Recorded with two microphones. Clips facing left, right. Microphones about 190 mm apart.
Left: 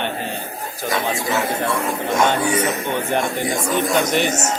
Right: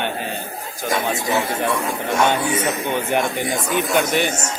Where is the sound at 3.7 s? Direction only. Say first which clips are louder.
Even; 5° right (ahead or behind).